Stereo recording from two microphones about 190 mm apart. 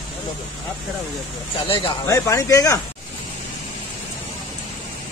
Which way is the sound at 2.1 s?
15° left (ahead or behind).